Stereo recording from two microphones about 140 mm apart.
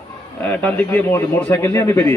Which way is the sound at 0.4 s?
10° left (ahead or behind).